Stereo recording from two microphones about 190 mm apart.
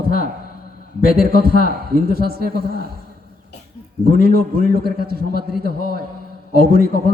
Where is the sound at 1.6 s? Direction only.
55° right (ahead or behind).